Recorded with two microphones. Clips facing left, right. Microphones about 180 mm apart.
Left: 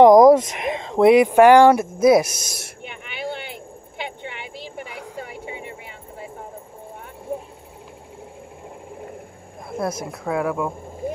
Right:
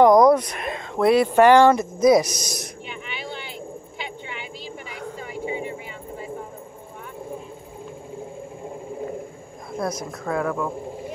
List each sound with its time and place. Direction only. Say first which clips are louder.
0.0 s speech: left 4 dB; 25° left (ahead or behind); by 2.7 s 5° left (ahead or behind)
2.9 s a sound: left 5 dB; 60° left (ahead or behind)
9.8 s speech: left 1 dB; 5° left (ahead or behind)